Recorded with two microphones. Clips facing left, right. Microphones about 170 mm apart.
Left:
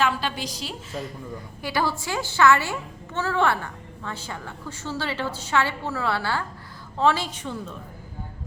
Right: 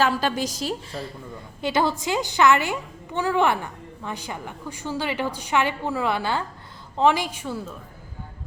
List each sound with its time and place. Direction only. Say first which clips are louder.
0.0 s a woman's voice: right 3 dB; 40° right (ahead or behind)
1.6 s a woman's voice: right 4 dB; 20° right (ahead or behind)